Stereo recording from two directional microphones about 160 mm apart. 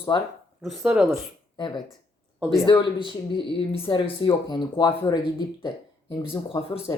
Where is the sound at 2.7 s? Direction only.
30° left (ahead or behind).